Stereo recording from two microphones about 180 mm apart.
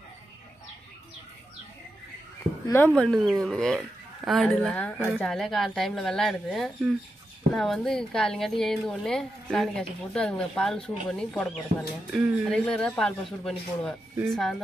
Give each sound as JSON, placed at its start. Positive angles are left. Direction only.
{"t": 2.7, "sound": "a woman's voice", "side_deg": 5}